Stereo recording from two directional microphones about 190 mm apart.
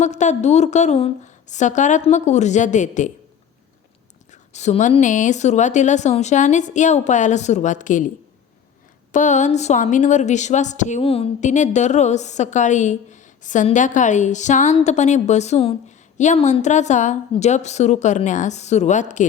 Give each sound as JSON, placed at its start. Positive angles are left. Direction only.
{"t": 0.0, "sound": "a woman's voice", "side_deg": 40}
{"t": 4.3, "sound": "a woman's voice", "side_deg": 35}
{"t": 9.1, "sound": "a woman's voice", "side_deg": 40}